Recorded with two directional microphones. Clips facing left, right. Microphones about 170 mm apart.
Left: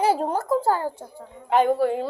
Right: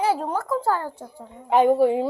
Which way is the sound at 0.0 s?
35° left (ahead or behind).